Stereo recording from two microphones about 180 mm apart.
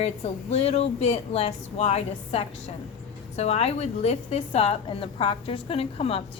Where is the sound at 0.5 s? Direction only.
35° left (ahead or behind).